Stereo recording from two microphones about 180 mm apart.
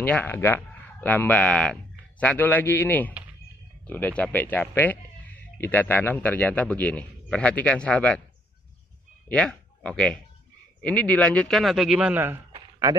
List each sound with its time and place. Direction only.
0.0 s a man's voice: 10° left (ahead or behind)
9.3 s speech: 5° left (ahead or behind); by 12.4 s 10° right (ahead or behind)
12.5 s a sound: 20° right (ahead or behind)